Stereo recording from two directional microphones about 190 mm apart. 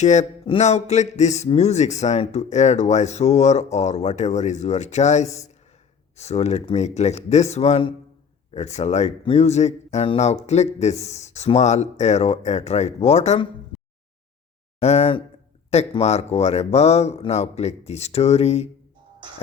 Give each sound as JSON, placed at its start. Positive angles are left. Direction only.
{"t": 0.0, "sound": "speech", "side_deg": 40}
{"t": 14.8, "sound": "speech", "side_deg": 35}